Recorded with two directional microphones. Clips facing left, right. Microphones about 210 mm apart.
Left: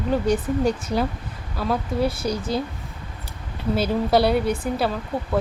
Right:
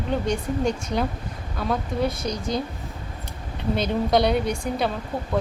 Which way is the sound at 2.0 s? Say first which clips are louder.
Left 1 dB; 30° left (ahead or behind).